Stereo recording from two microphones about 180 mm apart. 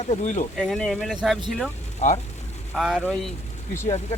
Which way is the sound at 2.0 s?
40° left (ahead or behind).